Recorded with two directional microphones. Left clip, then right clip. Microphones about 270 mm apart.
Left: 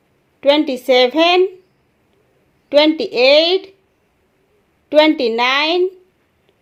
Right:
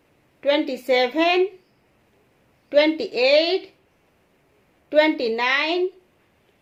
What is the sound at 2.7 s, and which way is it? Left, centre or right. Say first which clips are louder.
A woman's voice: left 6 dB; left.